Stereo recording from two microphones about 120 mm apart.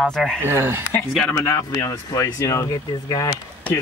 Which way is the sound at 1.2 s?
25° left (ahead or behind).